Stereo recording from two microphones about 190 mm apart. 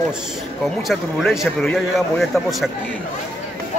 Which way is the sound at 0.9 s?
Centre (ahead or behind).